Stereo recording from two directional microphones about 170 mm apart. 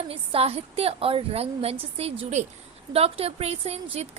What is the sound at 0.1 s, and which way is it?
A woman's voice, 35° right (ahead or behind).